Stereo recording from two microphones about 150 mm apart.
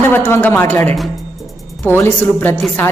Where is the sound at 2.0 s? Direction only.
15° left (ahead or behind).